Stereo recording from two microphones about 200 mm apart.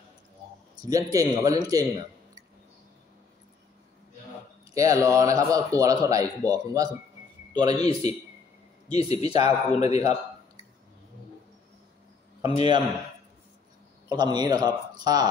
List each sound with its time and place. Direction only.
0.7 s speech: 20° right (ahead or behind)
4.7 s a man's voice: 15° right (ahead or behind)
8.9 s speech: 30° left (ahead or behind)
12.4 s speech: 35° left (ahead or behind)
14.0 s a man's voice: 20° right (ahead or behind)